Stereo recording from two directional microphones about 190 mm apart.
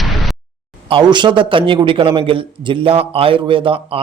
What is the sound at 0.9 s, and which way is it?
A man's voice, 25° right (ahead or behind).